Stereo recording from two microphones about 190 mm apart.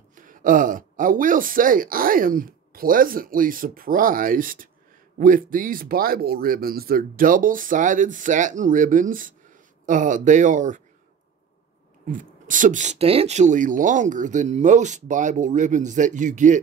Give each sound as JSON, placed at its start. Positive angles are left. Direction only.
{"t": 0.1, "sound": "speech", "side_deg": -45}
{"t": 12.1, "sound": "speech", "side_deg": -45}